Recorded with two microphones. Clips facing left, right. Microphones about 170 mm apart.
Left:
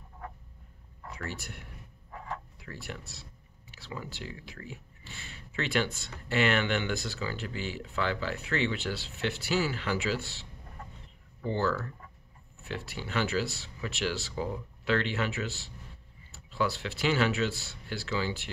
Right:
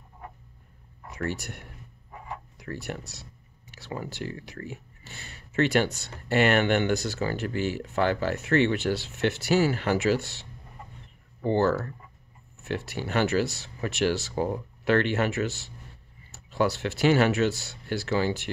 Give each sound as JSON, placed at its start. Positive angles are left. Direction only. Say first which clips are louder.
{"t": 1.4, "sound": "speech", "louder": "right 4 dB", "side_deg": -45}
{"t": 2.1, "sound": "a sound", "louder": "even", "side_deg": -10}
{"t": 2.6, "sound": "speech", "louder": "right 7 dB", "side_deg": -50}
{"t": 11.4, "sound": "speech", "louder": "right 6 dB", "side_deg": -50}